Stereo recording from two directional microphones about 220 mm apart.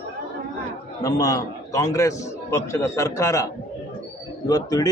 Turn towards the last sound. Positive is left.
turn(degrees=15)  # may be behind; listen again after turning